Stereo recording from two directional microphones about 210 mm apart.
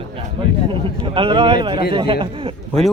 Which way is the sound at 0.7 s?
25° right (ahead or behind).